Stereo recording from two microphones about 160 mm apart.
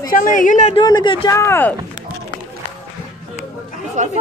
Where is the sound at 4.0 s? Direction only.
45° right (ahead or behind).